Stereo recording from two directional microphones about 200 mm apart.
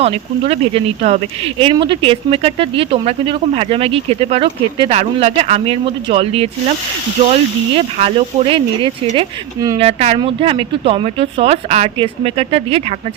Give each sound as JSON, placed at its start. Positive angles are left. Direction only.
{"t": 0.0, "sound": "speech", "side_deg": -30}
{"t": 7.8, "sound": "speech", "side_deg": -30}
{"t": 9.7, "sound": "speech", "side_deg": -30}